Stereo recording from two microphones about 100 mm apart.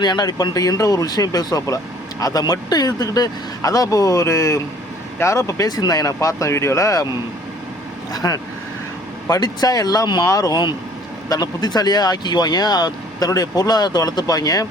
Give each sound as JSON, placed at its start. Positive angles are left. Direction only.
{"t": 0.0, "sound": "speech", "side_deg": 45}
{"t": 8.1, "sound": "speech", "side_deg": 35}